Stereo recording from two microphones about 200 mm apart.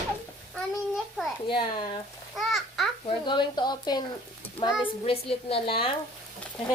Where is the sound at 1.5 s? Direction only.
25° left (ahead or behind).